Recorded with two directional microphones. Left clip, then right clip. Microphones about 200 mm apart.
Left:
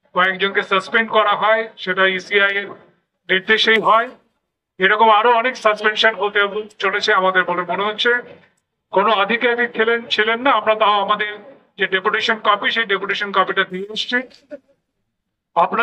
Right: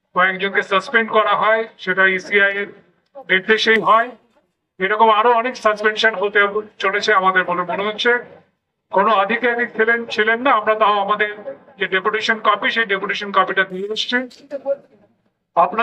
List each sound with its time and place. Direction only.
0.1 s a man's voice: 15° left (ahead or behind)
15.5 s a man's voice: 15° left (ahead or behind)